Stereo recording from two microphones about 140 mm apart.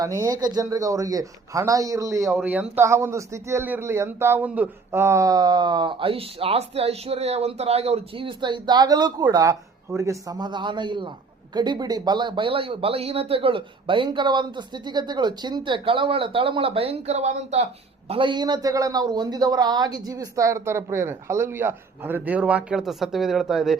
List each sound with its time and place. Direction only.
0.0 s speech: 25° right (ahead or behind)
2.4 s speech: 10° right (ahead or behind); by 17.7 s 50° right (ahead or behind)
18.1 s speech: 35° right (ahead or behind); by 23.7 s centre (ahead or behind)